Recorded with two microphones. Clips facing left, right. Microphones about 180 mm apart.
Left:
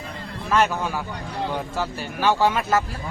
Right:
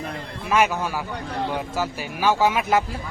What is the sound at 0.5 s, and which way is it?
Speech, 10° right (ahead or behind).